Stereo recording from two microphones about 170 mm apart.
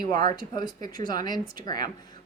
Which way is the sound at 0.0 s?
25° left (ahead or behind).